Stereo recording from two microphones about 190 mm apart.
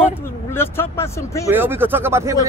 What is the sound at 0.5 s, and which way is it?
Speech, 15° left (ahead or behind).